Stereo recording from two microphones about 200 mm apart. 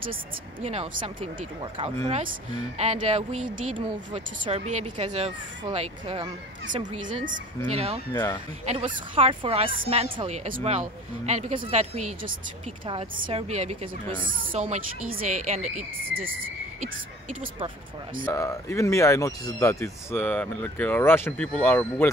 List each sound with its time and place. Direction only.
0.1 s speech: 30° right (ahead or behind)
8.1 s speech: 10° left (ahead or behind)
8.6 s speech: 30° right (ahead or behind); by 16.3 s 45° right (ahead or behind)
18.2 s speech: 15° left (ahead or behind)